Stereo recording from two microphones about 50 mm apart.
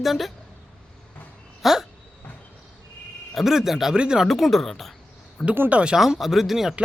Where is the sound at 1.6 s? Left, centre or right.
Centre.